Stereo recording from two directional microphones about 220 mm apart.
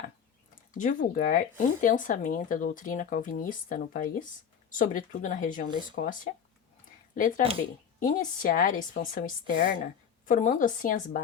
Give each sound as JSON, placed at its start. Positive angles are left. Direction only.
{"t": 0.7, "sound": "speech", "side_deg": 35}